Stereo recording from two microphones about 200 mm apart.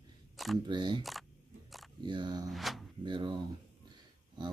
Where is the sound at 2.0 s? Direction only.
20° right (ahead or behind).